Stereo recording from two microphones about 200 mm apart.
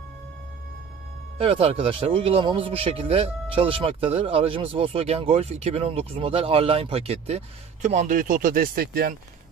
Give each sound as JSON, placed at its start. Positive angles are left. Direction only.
{"t": 1.4, "sound": "speech", "side_deg": -30}